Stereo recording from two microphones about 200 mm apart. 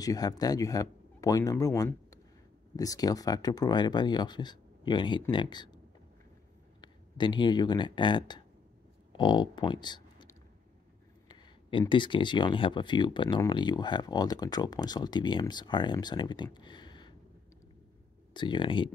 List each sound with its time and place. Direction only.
0.0 s speech: 20° left (ahead or behind)
6.8 s speech: 20° left (ahead or behind)
11.2 s speech: 20° left (ahead or behind)
16.5 s a sound: 20° left (ahead or behind)
18.3 s speech: 25° left (ahead or behind)